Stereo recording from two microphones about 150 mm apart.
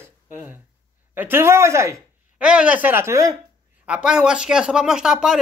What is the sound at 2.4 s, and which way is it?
Speech, 5° right (ahead or behind).